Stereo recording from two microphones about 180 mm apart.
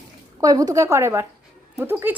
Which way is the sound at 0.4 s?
20° right (ahead or behind).